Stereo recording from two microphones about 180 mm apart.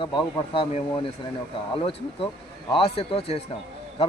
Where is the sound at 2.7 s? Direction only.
30° left (ahead or behind).